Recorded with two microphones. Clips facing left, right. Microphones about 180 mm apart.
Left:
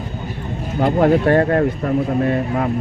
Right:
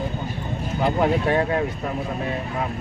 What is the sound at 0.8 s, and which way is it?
Speech, 55° left (ahead or behind).